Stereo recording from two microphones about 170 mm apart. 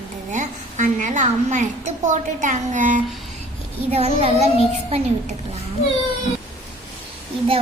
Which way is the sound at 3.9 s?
35° right (ahead or behind).